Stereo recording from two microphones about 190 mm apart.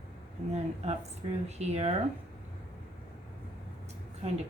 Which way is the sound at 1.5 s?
35° right (ahead or behind).